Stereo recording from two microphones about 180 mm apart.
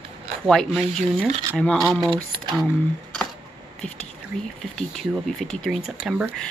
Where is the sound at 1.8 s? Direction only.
25° right (ahead or behind).